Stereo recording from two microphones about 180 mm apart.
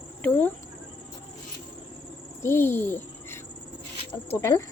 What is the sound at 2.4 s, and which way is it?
Speech, 15° left (ahead or behind).